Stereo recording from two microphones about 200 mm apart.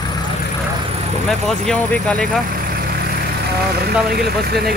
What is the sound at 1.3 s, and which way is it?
Speech, centre (ahead or behind).